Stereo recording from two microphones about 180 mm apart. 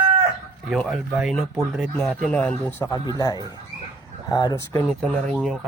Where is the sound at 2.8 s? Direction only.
20° left (ahead or behind).